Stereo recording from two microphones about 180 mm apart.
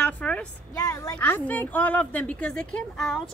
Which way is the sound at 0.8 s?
20° left (ahead or behind).